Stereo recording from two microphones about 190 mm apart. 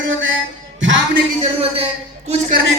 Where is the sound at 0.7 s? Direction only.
75° right (ahead or behind).